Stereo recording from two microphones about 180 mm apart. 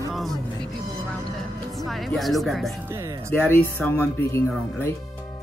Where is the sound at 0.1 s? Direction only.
Centre (ahead or behind).